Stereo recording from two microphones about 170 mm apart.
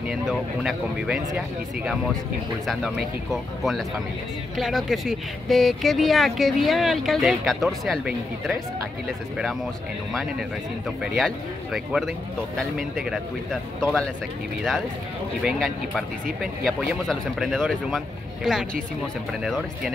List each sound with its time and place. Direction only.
0.1 s speech: 5° right (ahead or behind)
2.6 s speech: centre (ahead or behind)
11.0 s speech: centre (ahead or behind)
15.4 s speech: centre (ahead or behind)